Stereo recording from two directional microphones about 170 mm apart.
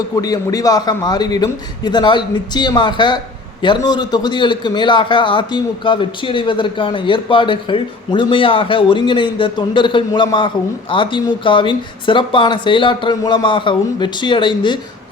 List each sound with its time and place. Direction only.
0.2 s a man's voice: 20° left (ahead or behind)